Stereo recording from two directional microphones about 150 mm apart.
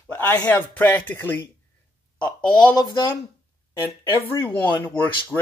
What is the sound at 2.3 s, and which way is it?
Speech, 30° left (ahead or behind).